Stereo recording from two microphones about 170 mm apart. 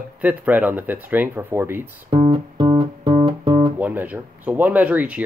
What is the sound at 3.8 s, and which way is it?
Speech, 10° right (ahead or behind).